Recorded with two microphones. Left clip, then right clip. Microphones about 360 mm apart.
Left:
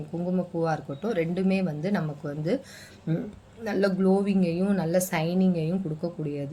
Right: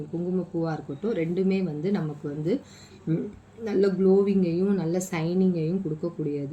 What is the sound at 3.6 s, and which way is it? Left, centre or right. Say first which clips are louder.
Speech: right 2 dB; left.